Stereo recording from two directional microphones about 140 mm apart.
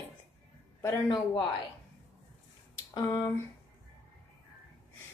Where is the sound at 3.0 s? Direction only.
25° left (ahead or behind).